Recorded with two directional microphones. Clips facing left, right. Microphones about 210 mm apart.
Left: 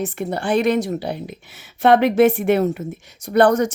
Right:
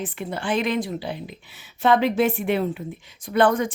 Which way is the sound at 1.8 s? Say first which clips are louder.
Left 5 dB; 70° left (ahead or behind).